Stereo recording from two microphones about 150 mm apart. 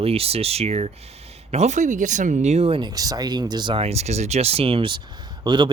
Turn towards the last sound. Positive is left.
turn(degrees=-30)  # may be behind; listen again after turning